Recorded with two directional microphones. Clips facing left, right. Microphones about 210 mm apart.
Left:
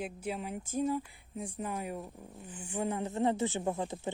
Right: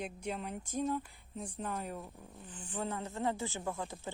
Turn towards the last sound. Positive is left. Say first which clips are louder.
# left 6 dB
turn(degrees=20)  # may be behind; listen again after turning